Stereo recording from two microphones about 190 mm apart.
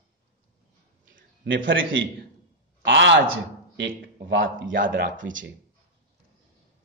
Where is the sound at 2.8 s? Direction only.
70° right (ahead or behind).